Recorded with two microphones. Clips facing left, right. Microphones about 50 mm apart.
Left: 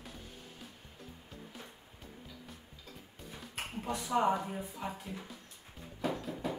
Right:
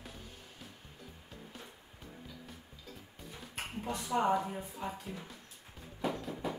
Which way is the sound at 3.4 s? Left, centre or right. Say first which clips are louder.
Even; centre.